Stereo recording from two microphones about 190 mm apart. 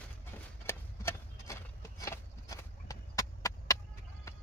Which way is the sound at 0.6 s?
15° left (ahead or behind).